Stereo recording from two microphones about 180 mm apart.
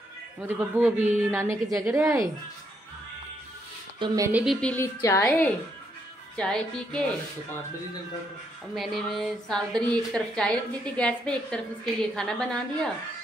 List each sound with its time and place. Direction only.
0.4 s a woman's voice: 10° right (ahead or behind)
4.0 s speech: 20° right (ahead or behind)
4.3 s a woman's voice: 5° right (ahead or behind)
4.6 s a woman's voice: 10° left (ahead or behind)
8.7 s a woman's voice: centre (ahead or behind)